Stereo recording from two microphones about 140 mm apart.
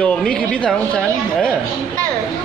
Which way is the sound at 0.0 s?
5° left (ahead or behind).